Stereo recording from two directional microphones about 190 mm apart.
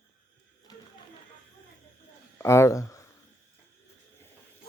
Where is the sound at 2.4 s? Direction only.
15° left (ahead or behind).